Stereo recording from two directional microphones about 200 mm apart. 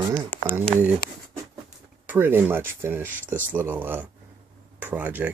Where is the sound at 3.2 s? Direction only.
10° left (ahead or behind).